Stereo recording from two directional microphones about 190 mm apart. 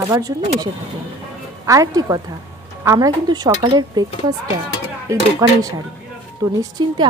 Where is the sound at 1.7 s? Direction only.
15° right (ahead or behind).